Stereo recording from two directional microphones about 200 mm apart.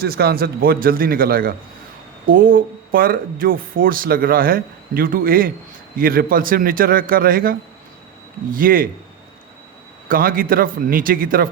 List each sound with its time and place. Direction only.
0.0 s speech: 50° right (ahead or behind)
10.1 s speech: 45° right (ahead or behind)